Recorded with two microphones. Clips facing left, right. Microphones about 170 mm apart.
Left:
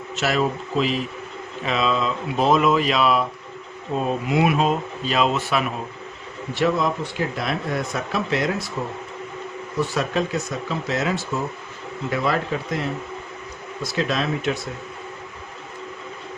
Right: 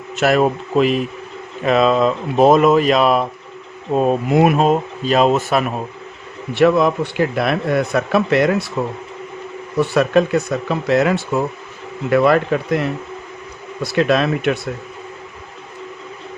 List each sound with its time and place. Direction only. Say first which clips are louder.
0.2 s speech: right 7 dB; 55° right (ahead or behind)
6.5 s speech: right 8 dB; 65° right (ahead or behind)
9.7 s speech: right 8 dB; 65° right (ahead or behind)